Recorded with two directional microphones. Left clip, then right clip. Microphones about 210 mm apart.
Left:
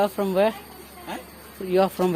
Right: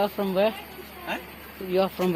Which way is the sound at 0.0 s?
25° left (ahead or behind).